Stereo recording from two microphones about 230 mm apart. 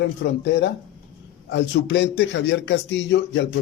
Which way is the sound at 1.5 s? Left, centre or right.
Left.